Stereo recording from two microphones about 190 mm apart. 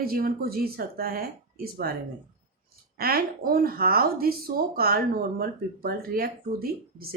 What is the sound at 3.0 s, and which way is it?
Speech, 50° right (ahead or behind).